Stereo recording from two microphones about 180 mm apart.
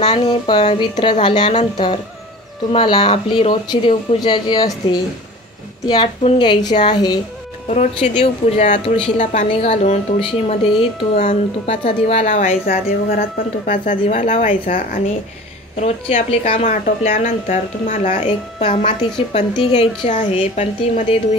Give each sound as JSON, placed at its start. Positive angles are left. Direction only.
{"t": 0.0, "sound": "speech", "side_deg": 25}
{"t": 2.7, "sound": "speech", "side_deg": 30}
{"t": 7.6, "sound": "a woman's voice", "side_deg": 40}
{"t": 15.8, "sound": "a woman's voice", "side_deg": 40}
{"t": 16.8, "sound": "a woman's voice", "side_deg": 45}